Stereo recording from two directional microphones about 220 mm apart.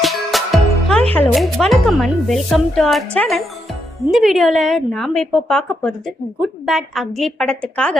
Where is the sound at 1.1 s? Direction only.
5° left (ahead or behind).